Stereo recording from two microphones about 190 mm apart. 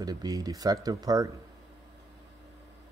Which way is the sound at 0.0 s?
20° right (ahead or behind).